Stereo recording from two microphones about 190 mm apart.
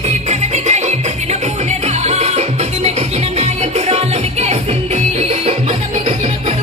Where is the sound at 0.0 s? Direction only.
35° right (ahead or behind).